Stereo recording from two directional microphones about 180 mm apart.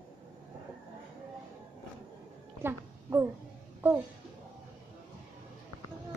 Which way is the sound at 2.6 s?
15° right (ahead or behind).